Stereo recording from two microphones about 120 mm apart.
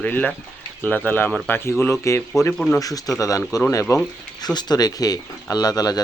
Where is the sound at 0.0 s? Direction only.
10° left (ahead or behind).